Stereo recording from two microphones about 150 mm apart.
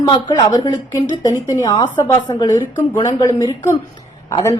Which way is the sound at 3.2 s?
25° left (ahead or behind).